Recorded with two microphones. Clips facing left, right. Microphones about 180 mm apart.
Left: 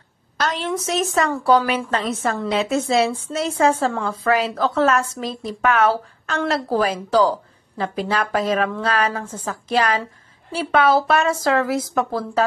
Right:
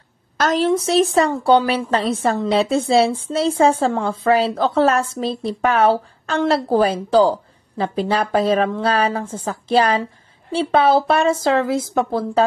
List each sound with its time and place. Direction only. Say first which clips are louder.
0.4 s a woman's voice: right 7 dB; 40° right (ahead or behind)